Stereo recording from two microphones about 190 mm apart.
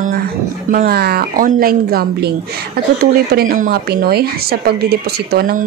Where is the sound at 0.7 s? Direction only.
50° right (ahead or behind).